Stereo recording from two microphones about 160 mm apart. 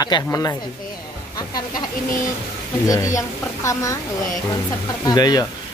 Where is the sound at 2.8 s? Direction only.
20° left (ahead or behind).